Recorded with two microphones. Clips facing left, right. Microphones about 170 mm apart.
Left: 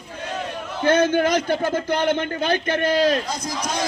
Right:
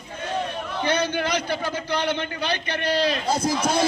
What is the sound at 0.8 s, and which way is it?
A man's voice, 50° left (ahead or behind).